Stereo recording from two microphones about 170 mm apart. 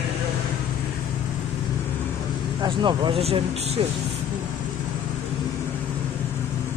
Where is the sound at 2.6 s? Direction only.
25° right (ahead or behind).